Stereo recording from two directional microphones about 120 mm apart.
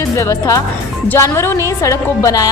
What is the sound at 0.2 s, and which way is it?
A woman's voice, 25° left (ahead or behind).